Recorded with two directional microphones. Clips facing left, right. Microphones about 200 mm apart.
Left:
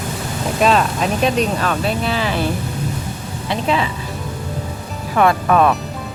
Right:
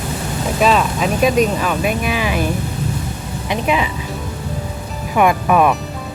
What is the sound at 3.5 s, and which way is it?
Speech, 15° right (ahead or behind).